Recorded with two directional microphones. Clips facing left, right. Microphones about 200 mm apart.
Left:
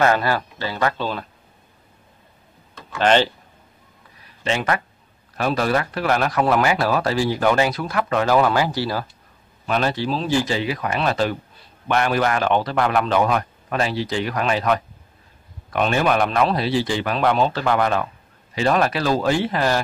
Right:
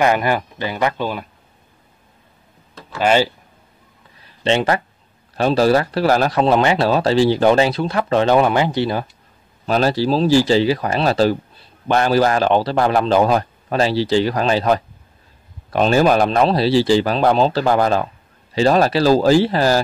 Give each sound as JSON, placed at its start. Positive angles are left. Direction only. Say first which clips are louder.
{"t": 0.0, "sound": "speech", "louder": "right 2 dB", "side_deg": -15}
{"t": 2.9, "sound": "speech", "louder": "right 1 dB", "side_deg": -10}
{"t": 4.4, "sound": "speech", "louder": "right 5 dB", "side_deg": -30}
{"t": 9.7, "sound": "a man's voice", "louder": "right 5 dB", "side_deg": -35}